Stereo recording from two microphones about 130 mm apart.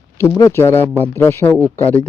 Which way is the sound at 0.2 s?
25° left (ahead or behind).